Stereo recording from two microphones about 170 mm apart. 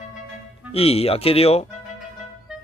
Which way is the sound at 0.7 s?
35° left (ahead or behind).